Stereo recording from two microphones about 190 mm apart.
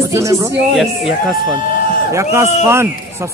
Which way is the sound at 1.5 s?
45° left (ahead or behind).